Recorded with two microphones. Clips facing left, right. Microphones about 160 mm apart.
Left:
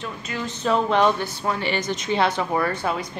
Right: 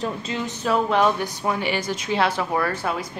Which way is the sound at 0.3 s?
25° right (ahead or behind).